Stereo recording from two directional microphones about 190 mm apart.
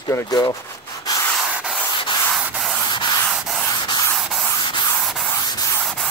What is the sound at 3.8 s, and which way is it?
Rub, 25° left (ahead or behind).